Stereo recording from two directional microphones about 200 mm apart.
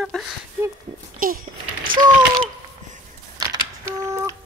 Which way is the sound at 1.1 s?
45° right (ahead or behind).